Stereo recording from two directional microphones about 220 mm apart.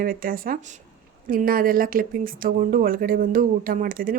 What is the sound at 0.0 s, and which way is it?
Speech, 40° right (ahead or behind).